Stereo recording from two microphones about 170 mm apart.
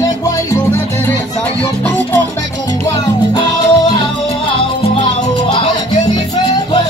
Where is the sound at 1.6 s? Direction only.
10° left (ahead or behind).